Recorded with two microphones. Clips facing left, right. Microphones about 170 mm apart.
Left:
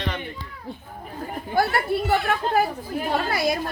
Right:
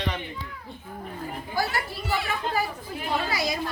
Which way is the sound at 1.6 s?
55° left (ahead or behind).